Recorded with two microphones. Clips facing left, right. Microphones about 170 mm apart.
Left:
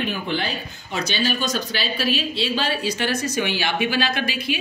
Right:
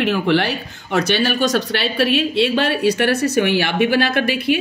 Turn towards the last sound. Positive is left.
turn(degrees=-60)  # may be behind; listen again after turning